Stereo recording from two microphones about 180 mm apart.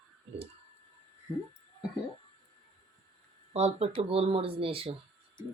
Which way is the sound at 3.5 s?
35° right (ahead or behind).